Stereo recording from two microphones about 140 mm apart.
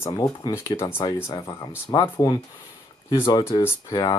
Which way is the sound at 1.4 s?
35° left (ahead or behind).